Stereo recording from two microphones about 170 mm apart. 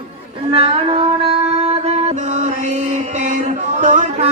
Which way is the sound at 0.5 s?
35° right (ahead or behind).